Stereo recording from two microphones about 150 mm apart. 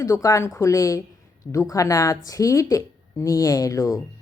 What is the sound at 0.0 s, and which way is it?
A woman's voice, 20° left (ahead or behind).